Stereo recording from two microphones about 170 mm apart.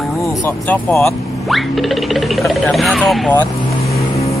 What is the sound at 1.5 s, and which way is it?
Speech, centre (ahead or behind).